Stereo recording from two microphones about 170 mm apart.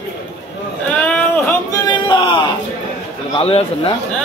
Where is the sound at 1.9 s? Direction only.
25° left (ahead or behind).